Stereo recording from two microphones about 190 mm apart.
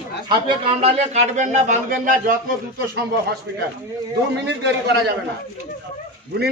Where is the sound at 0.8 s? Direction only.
40° right (ahead or behind).